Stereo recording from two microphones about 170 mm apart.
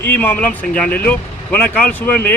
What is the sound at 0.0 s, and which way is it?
Speech, 10° left (ahead or behind).